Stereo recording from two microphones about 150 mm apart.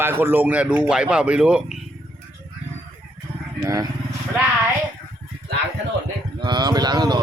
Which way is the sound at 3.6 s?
25° right (ahead or behind).